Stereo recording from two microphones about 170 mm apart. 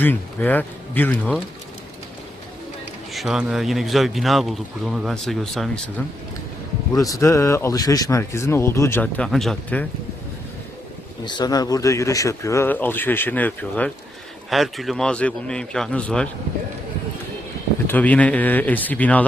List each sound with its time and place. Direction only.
0.0 s speech: 10° left (ahead or behind)
3.1 s speech: centre (ahead or behind)
6.9 s speech: 20° left (ahead or behind)
11.3 s speech: 25° left (ahead or behind); by 16.3 s 5° left (ahead or behind)
17.8 s speech: 10° left (ahead or behind)